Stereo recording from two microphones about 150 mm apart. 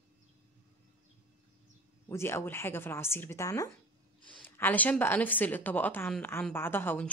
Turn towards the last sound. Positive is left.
turn(degrees=15)  # may be behind; listen again after turning